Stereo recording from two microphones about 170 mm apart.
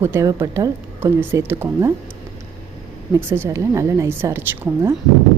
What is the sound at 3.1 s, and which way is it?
A woman's voice, 15° right (ahead or behind).